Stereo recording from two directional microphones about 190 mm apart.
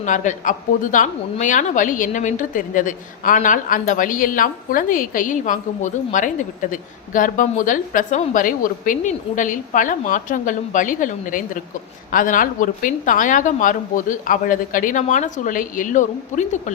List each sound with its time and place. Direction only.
0.0 s speech: 40° left (ahead or behind)